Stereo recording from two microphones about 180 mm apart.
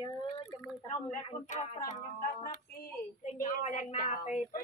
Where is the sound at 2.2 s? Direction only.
50° left (ahead or behind).